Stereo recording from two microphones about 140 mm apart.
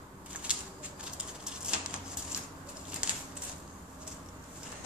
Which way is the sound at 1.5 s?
5° right (ahead or behind).